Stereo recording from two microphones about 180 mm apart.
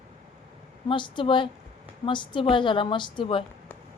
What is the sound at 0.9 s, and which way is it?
Speech, 25° left (ahead or behind).